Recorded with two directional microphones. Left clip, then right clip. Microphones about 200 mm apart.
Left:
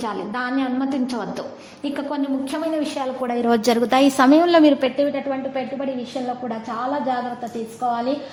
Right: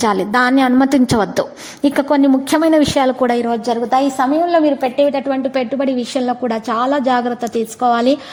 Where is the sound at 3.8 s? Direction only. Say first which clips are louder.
Right 1 dB; 15° left (ahead or behind).